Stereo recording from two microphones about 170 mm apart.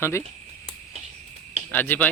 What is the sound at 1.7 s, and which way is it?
Speech, 10° left (ahead or behind).